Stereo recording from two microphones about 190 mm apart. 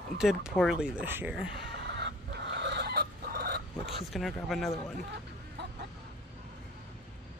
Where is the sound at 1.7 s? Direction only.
60° right (ahead or behind).